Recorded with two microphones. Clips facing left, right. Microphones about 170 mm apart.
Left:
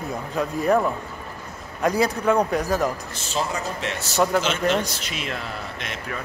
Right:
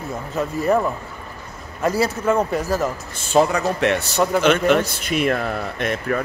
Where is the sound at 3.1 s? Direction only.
60° right (ahead or behind).